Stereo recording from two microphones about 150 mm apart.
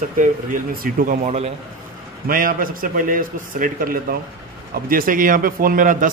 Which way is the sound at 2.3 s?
70° right (ahead or behind).